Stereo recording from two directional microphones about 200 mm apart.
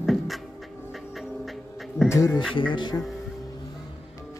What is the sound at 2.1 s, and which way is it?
Speech, 15° left (ahead or behind).